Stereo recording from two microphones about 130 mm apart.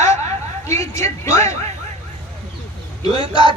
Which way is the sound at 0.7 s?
25° left (ahead or behind).